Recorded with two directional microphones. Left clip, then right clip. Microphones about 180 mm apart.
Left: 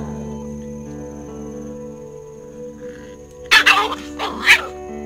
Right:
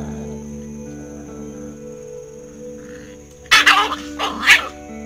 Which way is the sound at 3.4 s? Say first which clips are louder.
Even; 35° left (ahead or behind).